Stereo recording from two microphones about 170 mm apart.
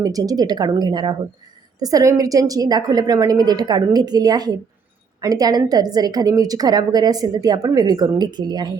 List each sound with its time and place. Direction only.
0.0 s a woman's voice: 20° right (ahead or behind)